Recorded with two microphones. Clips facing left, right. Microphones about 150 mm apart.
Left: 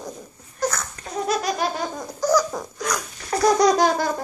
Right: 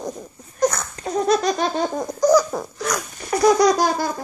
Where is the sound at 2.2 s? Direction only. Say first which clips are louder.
Right 4 dB; 10° right (ahead or behind).